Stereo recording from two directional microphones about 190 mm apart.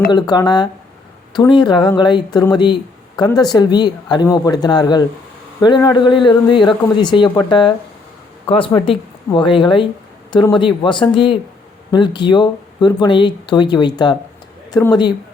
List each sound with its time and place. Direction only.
0.1 s a man's voice: 20° left (ahead or behind)